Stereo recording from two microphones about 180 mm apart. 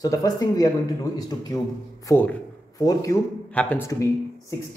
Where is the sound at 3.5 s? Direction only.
5° left (ahead or behind).